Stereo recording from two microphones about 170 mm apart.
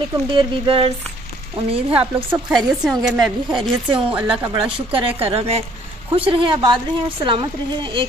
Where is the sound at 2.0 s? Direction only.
10° right (ahead or behind).